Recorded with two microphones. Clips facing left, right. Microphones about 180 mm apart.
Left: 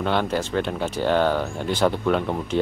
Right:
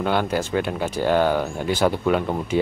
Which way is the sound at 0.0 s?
5° right (ahead or behind).